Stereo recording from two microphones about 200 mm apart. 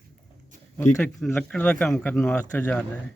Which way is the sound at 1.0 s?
10° left (ahead or behind).